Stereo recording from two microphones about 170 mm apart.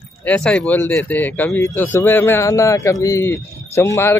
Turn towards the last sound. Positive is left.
turn(degrees=15)  # may be behind; listen again after turning